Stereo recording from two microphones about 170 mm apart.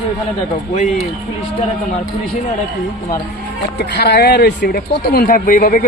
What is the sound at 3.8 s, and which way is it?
Speech, 75° left (ahead or behind).